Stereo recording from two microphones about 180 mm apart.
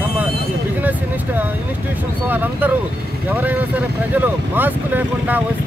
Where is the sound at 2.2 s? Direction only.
10° right (ahead or behind).